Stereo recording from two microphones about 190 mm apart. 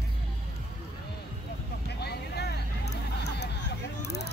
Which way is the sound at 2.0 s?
60° left (ahead or behind).